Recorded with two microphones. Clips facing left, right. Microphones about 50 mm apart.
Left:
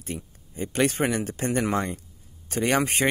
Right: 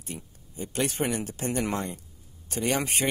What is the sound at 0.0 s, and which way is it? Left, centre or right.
Speech, left.